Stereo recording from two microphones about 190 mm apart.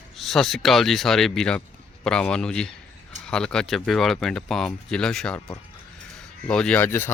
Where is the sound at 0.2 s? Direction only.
Centre (ahead or behind).